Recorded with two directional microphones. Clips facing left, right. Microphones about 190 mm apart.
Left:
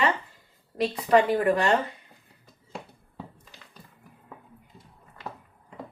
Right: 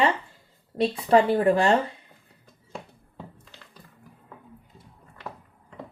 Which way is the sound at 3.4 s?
5° left (ahead or behind).